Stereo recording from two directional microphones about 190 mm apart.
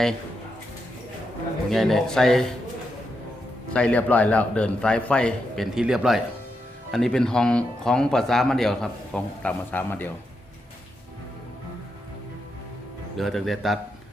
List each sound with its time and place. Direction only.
1.7 s speech: centre (ahead or behind)
3.7 s speech: 5° left (ahead or behind)
13.1 s speech: centre (ahead or behind)